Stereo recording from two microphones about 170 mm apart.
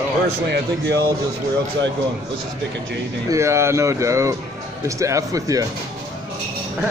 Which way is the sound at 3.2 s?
15° right (ahead or behind).